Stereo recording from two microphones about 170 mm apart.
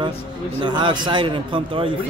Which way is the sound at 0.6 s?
25° right (ahead or behind).